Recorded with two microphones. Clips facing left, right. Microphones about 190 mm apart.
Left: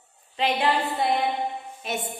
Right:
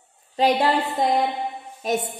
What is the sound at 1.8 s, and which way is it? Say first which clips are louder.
Music: right 9 dB; 40° right (ahead or behind).